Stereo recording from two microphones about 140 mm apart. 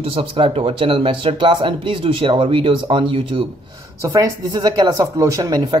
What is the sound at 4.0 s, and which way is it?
Speech, 25° right (ahead or behind).